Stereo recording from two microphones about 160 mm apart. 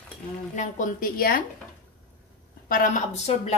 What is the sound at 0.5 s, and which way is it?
Speech, 50° left (ahead or behind).